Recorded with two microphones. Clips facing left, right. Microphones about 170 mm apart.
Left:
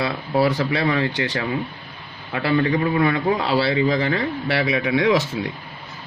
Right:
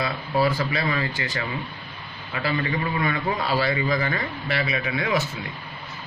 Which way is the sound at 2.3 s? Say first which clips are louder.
Left 6 dB; 55° left (ahead or behind).